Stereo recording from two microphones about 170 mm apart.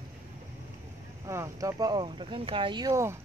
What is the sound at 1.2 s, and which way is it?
Speech, 20° right (ahead or behind).